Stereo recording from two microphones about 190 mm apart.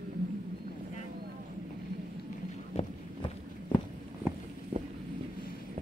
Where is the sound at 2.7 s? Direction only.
35° left (ahead or behind).